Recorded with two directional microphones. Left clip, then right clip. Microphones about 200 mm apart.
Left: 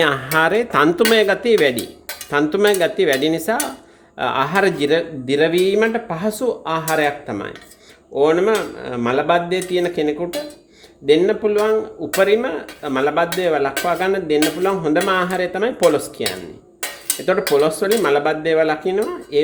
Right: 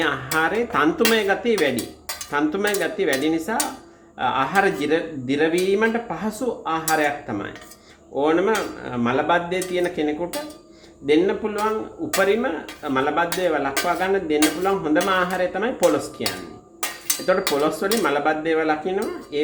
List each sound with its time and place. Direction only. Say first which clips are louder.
0.0 s speech: left 5 dB; 55° left (ahead or behind)
17.6 s speech: left 4 dB; 40° left (ahead or behind)